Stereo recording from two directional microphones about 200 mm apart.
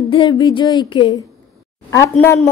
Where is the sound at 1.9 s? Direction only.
15° left (ahead or behind).